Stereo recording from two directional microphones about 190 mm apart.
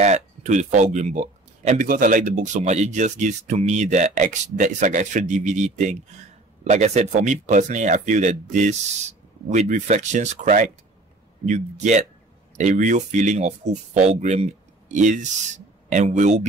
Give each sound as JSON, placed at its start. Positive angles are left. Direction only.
{"t": 0.0, "sound": "speech", "side_deg": -35}